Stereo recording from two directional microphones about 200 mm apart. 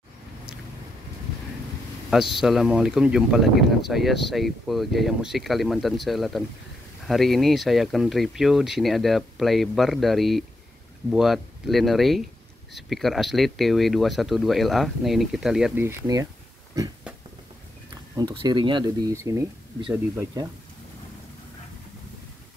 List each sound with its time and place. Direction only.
2.0 s a sound: centre (ahead or behind)
2.4 s speech: centre (ahead or behind)
18.1 s speech: 20° right (ahead or behind)